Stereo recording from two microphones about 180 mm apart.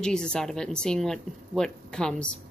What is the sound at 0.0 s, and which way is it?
A woman's voice, 5° left (ahead or behind).